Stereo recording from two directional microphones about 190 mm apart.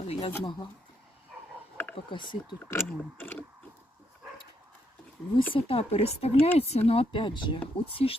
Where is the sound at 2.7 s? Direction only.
10° left (ahead or behind).